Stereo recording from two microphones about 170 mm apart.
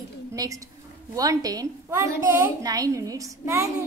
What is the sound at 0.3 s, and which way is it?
A woman's voice, 20° right (ahead or behind).